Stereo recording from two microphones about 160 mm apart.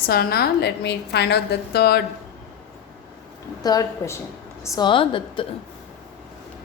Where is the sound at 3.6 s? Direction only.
25° left (ahead or behind).